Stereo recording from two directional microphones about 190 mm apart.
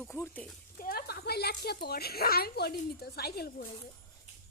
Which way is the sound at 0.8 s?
50° left (ahead or behind).